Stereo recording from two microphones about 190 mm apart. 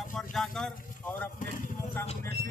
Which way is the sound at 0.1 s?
Centre (ahead or behind).